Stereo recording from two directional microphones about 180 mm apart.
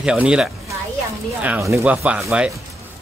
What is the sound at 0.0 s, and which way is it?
Speech, 5° right (ahead or behind).